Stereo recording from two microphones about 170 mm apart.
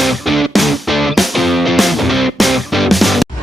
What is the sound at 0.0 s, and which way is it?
Music, centre (ahead or behind).